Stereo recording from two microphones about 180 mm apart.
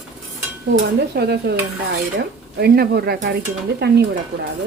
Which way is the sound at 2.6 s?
60° right (ahead or behind).